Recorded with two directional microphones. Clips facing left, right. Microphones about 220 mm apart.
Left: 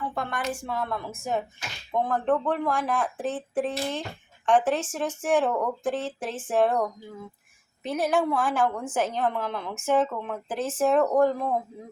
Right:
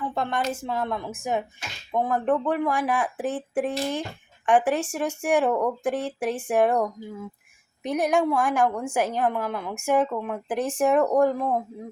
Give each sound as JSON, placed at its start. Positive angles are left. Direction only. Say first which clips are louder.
{"t": 0.1, "sound": "a woman's voice", "louder": "right 3 dB", "side_deg": -25}
{"t": 7.9, "sound": "a woman's voice", "louder": "right 2 dB", "side_deg": -15}